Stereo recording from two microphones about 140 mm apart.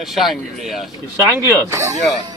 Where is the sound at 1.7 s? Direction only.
20° right (ahead or behind).